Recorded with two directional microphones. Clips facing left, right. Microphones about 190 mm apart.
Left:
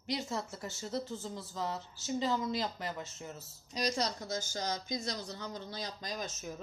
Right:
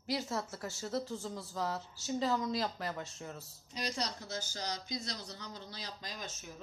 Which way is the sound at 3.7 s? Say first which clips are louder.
Left 5 dB; 45° left (ahead or behind).